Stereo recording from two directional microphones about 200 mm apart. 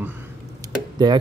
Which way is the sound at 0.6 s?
20° right (ahead or behind).